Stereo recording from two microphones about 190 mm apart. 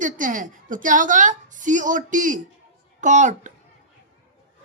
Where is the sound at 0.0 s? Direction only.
45° right (ahead or behind).